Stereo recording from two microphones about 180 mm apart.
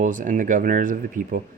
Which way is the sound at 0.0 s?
45° right (ahead or behind).